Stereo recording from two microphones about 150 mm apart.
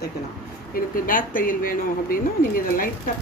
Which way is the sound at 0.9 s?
70° left (ahead or behind).